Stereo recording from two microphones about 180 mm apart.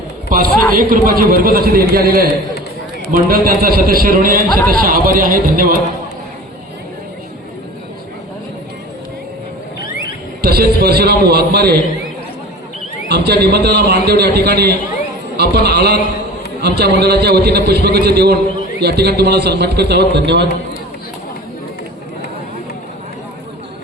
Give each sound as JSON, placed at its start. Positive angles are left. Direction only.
{"t": 0.3, "sound": "a man's voice", "side_deg": -55}
{"t": 10.4, "sound": "a man's voice", "side_deg": -60}
{"t": 13.1, "sound": "a man's voice", "side_deg": -65}